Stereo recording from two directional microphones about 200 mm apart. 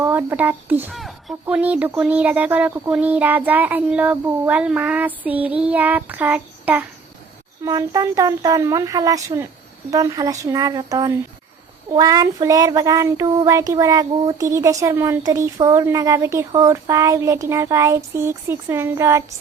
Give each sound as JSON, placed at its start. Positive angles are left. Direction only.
{"t": 0.0, "sound": "speech", "side_deg": -10}